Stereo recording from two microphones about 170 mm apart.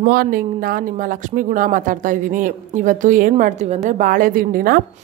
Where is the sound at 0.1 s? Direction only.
55° right (ahead or behind).